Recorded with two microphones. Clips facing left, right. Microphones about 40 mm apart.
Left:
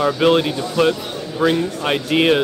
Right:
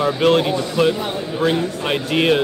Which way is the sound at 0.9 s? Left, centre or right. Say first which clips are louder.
Right 1 dB; centre.